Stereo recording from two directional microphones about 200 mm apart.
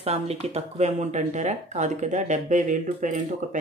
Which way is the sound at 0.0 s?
30° right (ahead or behind).